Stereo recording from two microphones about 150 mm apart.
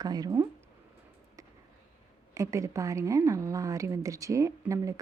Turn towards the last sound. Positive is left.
turn(degrees=-20)  # may be behind; listen again after turning